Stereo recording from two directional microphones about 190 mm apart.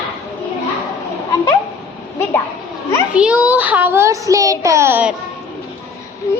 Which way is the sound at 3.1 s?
5° right (ahead or behind).